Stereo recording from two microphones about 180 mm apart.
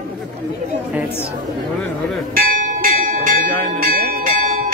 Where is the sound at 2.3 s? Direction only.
50° right (ahead or behind).